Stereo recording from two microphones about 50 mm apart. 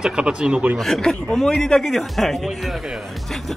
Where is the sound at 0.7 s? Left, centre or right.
Centre.